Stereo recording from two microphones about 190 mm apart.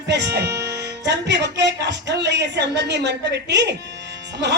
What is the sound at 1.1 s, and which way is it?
A woman's voice, 65° right (ahead or behind).